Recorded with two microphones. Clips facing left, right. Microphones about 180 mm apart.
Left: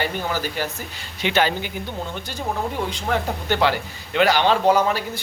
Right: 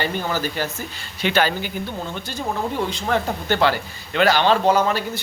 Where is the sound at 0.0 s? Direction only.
10° left (ahead or behind).